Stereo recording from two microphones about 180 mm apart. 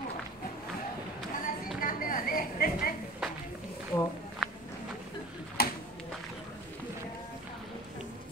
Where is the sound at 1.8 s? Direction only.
50° left (ahead or behind).